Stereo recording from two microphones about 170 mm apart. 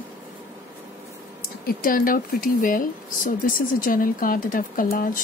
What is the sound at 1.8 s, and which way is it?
A woman's voice, 55° left (ahead or behind).